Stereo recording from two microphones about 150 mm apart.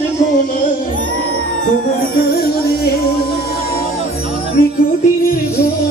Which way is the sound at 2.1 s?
90° left.